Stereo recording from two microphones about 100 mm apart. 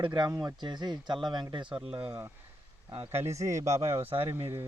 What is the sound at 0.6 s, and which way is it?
Speech, 45° right (ahead or behind).